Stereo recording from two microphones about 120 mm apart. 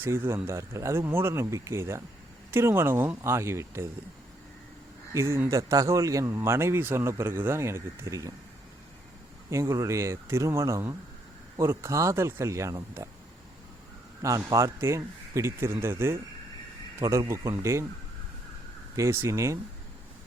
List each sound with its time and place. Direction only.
0.0 s speech: 20° right (ahead or behind)
5.1 s speech: 20° right (ahead or behind)
9.5 s speech: 25° right (ahead or behind)
14.2 s speech: 25° right (ahead or behind)
18.9 s speech: 20° right (ahead or behind)